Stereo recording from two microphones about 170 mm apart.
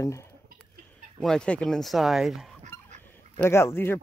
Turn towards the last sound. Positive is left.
turn(degrees=15)  # may be behind; listen again after turning